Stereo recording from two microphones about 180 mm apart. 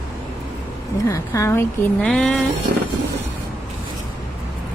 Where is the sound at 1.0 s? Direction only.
15° left (ahead or behind).